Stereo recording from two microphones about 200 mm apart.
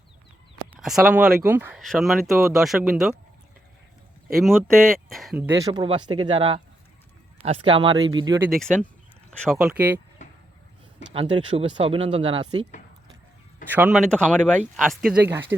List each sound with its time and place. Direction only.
0.7 s speech: centre (ahead or behind)
1.8 s speech: centre (ahead or behind)
4.3 s speech: centre (ahead or behind)
5.4 s speech: 15° right (ahead or behind)
8.4 s speech: centre (ahead or behind)
11.1 s speech: 25° right (ahead or behind)
13.7 s speech: 5° right (ahead or behind)
14.1 s speech: 5° left (ahead or behind); by 15.5 s 10° right (ahead or behind)